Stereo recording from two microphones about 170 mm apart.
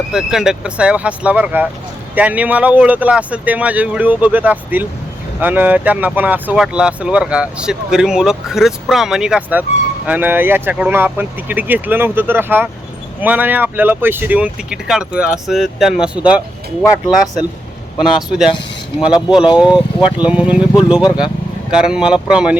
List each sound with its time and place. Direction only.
0.1 s speech: 5° right (ahead or behind)
21.7 s speech: 5° right (ahead or behind)